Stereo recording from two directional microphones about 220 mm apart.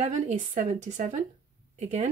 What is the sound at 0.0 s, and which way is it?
Speech, 35° right (ahead or behind).